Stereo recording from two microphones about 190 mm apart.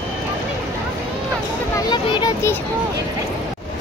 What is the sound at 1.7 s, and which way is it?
Speech, 20° left (ahead or behind).